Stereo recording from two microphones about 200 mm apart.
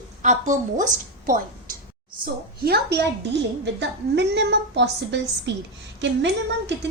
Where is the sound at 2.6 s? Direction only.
55° right (ahead or behind).